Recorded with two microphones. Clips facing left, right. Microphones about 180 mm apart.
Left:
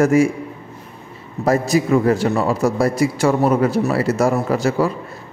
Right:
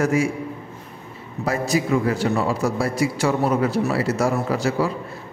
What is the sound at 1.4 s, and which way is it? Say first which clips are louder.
A man's voice: left 5 dB; 45° left (ahead or behind).